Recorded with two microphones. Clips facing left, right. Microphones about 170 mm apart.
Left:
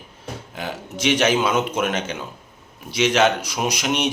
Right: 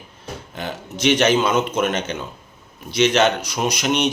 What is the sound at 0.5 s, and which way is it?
A man's voice, 5° left (ahead or behind).